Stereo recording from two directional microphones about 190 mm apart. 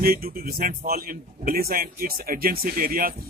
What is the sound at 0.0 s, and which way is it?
A man's voice, 50° right (ahead or behind).